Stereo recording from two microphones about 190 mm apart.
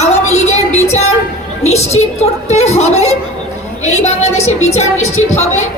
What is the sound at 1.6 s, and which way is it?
A woman's voice, 35° left (ahead or behind).